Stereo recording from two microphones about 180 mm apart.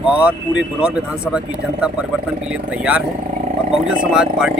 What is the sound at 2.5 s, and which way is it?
Speech, 5° right (ahead or behind).